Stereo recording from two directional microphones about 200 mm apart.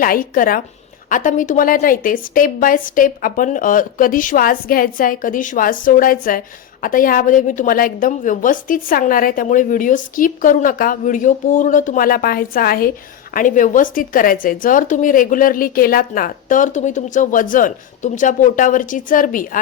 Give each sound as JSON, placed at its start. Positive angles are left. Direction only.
{"t": 0.0, "sound": "a woman's voice", "side_deg": 45}